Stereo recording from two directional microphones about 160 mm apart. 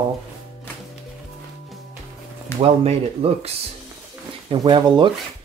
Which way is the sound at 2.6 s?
40° right (ahead or behind).